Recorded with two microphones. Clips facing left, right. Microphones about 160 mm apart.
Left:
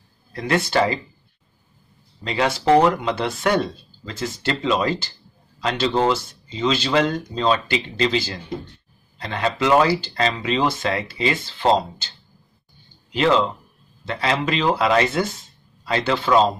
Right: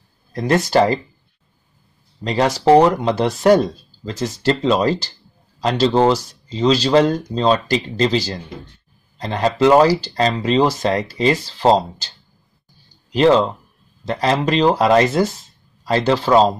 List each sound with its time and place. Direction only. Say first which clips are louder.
0.3 s speech: right 5 dB; 40° right (ahead or behind)
2.2 s speech: right 4 dB; 40° right (ahead or behind)
13.1 s speech: right 5 dB; 40° right (ahead or behind)